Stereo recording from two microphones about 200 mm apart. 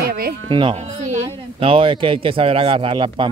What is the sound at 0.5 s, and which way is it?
Speech, 25° right (ahead or behind).